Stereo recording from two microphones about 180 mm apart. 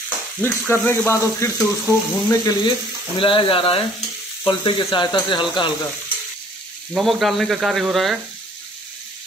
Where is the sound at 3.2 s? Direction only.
30° left (ahead or behind).